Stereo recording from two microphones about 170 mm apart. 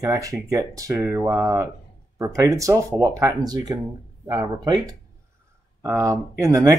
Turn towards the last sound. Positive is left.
turn(degrees=-20)  # may be behind; listen again after turning